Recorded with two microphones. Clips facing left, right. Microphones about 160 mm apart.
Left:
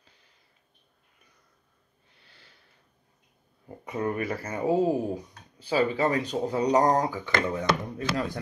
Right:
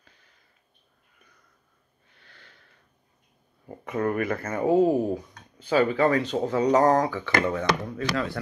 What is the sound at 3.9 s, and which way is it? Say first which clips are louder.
Speech: right 3 dB; 15° left (ahead or behind).